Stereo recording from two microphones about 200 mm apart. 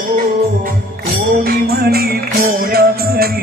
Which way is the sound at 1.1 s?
50° right (ahead or behind).